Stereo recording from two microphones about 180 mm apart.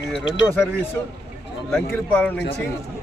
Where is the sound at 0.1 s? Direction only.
90° left.